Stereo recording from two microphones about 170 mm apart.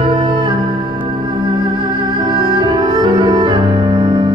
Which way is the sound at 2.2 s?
25° right (ahead or behind).